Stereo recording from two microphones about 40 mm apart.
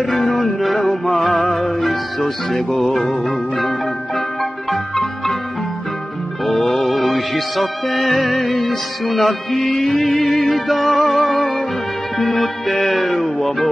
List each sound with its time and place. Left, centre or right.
0.1 s music: centre
6.4 s music: centre
11.0 s music: left
11.2 s music: centre
12.8 s music: centre